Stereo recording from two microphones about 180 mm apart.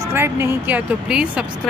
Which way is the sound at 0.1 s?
15° right (ahead or behind).